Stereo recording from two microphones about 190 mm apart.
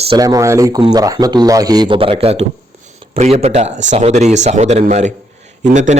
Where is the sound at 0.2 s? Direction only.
15° right (ahead or behind).